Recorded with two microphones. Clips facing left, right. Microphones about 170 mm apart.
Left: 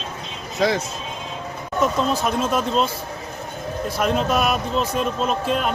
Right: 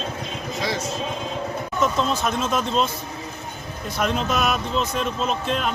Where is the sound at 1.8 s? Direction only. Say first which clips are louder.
Left 2 dB; 10° left (ahead or behind).